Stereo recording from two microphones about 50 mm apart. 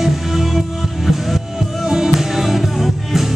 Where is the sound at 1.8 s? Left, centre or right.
Centre.